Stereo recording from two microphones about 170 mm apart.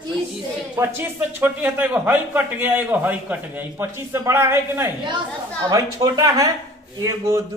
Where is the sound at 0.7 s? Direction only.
10° right (ahead or behind).